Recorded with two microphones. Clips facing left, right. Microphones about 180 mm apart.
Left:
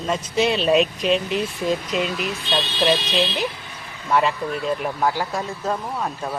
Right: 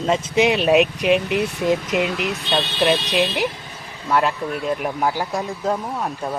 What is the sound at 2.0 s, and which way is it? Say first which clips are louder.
Speech: right 2 dB; 65° right (ahead or behind).